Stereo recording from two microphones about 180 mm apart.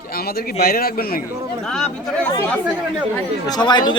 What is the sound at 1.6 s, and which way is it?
Speech, 5° left (ahead or behind).